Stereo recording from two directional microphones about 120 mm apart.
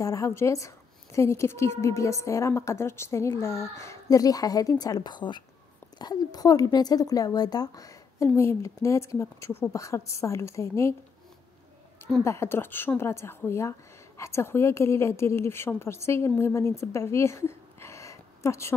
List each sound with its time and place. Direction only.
0.0 s a woman's voice: 25° left (ahead or behind)
12.2 s a woman's voice: 20° left (ahead or behind)